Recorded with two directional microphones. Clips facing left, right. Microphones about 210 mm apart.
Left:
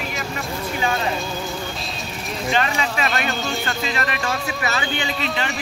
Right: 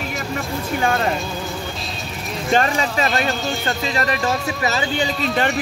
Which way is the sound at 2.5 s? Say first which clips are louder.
Right 4 dB; 40° right (ahead or behind).